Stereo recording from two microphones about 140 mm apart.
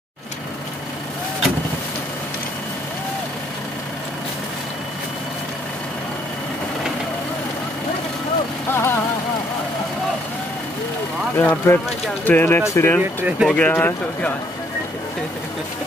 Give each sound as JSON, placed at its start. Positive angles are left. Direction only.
{"t": 8.7, "sound": "vehicle", "side_deg": 20}
{"t": 11.3, "sound": "speech", "side_deg": 15}
{"t": 13.0, "sound": "speech", "side_deg": -15}
{"t": 13.5, "sound": "speech", "side_deg": 10}